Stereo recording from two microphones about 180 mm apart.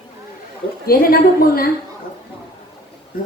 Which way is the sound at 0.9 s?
55° left (ahead or behind).